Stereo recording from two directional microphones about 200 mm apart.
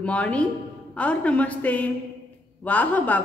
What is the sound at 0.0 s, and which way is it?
A woman's voice, 5° left (ahead or behind).